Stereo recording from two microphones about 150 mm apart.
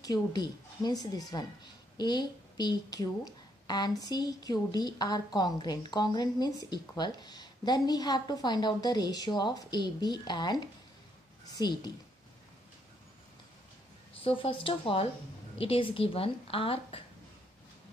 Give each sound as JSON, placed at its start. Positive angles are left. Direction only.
{"t": 0.0, "sound": "a woman's voice", "side_deg": 25}
{"t": 14.2, "sound": "a woman's voice", "side_deg": 35}